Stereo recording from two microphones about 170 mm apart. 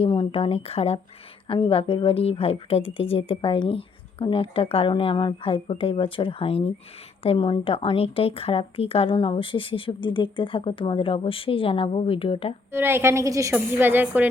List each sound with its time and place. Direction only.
0.0 s speech: 30° left (ahead or behind)
12.7 s a woman's voice: 15° right (ahead or behind)